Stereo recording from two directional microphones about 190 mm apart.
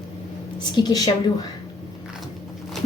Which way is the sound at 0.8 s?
20° left (ahead or behind).